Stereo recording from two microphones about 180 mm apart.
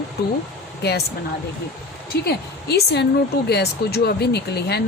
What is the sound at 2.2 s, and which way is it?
A woman's voice, 65° left (ahead or behind).